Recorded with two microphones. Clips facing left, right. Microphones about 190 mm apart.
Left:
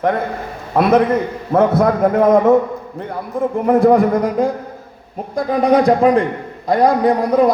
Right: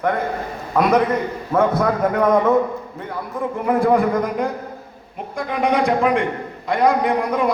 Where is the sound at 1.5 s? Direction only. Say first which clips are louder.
Left 4 dB; 35° left (ahead or behind).